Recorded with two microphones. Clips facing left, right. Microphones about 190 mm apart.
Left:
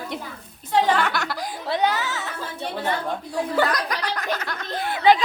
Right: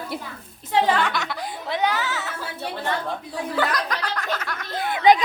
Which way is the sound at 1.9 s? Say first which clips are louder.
Right 1 dB; 10° right (ahead or behind).